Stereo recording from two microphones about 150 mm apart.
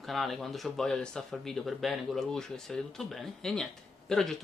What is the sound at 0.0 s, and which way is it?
Speech, centre (ahead or behind).